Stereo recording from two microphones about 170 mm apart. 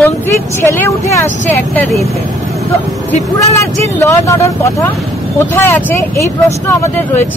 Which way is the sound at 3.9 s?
20° left (ahead or behind).